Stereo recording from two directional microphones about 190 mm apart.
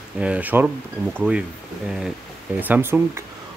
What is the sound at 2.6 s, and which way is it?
Speech, 10° right (ahead or behind).